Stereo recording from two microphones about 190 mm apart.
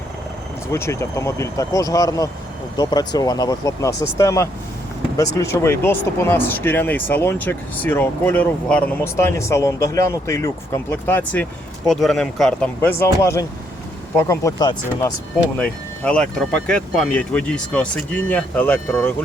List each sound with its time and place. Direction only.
0.7 s a man's voice: 15° left (ahead or behind)
15.5 s speech: 5° left (ahead or behind)